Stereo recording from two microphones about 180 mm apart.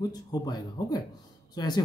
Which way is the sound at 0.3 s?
20° left (ahead or behind).